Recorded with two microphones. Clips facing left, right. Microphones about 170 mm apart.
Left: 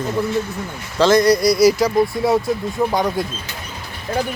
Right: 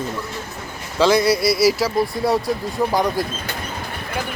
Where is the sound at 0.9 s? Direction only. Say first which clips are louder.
Left 3 dB; 5° right (ahead or behind).